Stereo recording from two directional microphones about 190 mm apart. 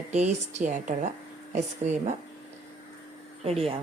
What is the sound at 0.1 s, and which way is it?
A woman's voice, 35° right (ahead or behind).